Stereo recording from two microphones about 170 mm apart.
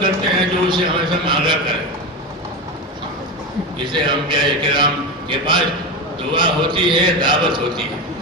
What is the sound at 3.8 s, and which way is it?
A man's voice, 30° right (ahead or behind).